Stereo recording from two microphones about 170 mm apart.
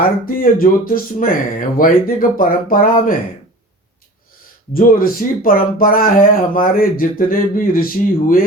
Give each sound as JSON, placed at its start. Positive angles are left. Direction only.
{"t": 0.3, "sound": "speech", "side_deg": 55}
{"t": 4.7, "sound": "speech", "side_deg": 55}